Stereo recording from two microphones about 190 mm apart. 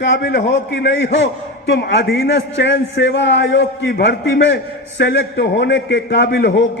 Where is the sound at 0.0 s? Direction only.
65° left (ahead or behind).